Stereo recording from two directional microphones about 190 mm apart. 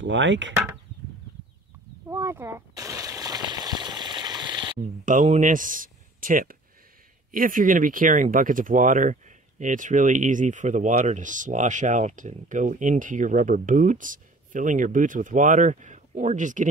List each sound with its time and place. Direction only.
0.0 s chop: 75° right (ahead or behind)
2.0 s a sound: 15° right (ahead or behind)
4.7 s speech: 45° right (ahead or behind)